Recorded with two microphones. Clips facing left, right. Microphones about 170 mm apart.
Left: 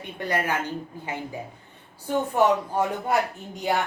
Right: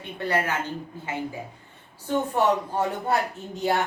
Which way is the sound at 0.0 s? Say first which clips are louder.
Right 1 dB; 15° left (ahead or behind).